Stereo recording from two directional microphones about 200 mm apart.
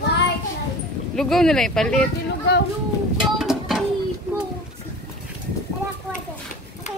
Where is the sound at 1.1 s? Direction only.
Centre (ahead or behind).